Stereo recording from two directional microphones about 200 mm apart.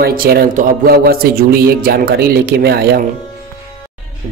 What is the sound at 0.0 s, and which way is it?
A man's voice, 50° right (ahead or behind).